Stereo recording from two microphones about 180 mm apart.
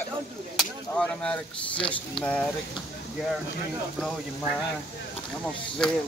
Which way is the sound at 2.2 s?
5° left (ahead or behind).